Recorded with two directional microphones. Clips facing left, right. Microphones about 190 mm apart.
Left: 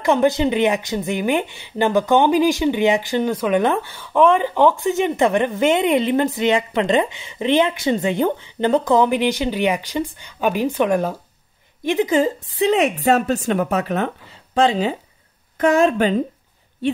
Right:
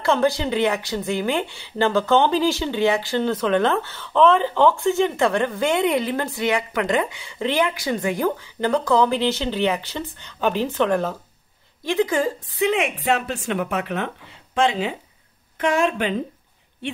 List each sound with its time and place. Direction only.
0.0 s a woman's voice: 15° left (ahead or behind)
12.5 s speech: 40° left (ahead or behind)